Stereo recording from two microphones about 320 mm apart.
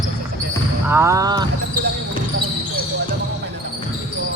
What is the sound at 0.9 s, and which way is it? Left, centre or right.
Speech, centre.